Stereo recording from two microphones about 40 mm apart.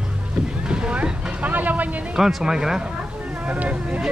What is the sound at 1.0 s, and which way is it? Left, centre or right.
Vehicle, right.